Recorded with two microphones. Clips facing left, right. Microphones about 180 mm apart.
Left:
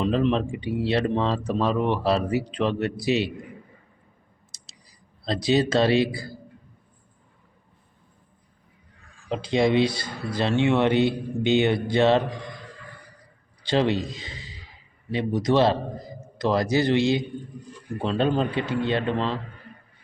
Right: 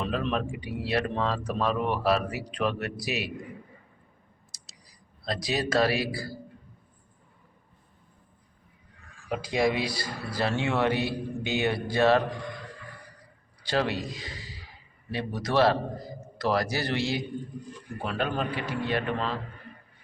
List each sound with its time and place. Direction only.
0.0 s speech: 20° left (ahead or behind)
4.5 s clicking: 25° left (ahead or behind)
5.2 s speech: 25° left (ahead or behind)
9.3 s speech: 25° left (ahead or behind)
13.6 s a man's voice: 20° left (ahead or behind)